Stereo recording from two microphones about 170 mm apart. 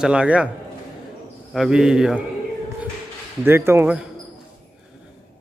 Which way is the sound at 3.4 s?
15° right (ahead or behind).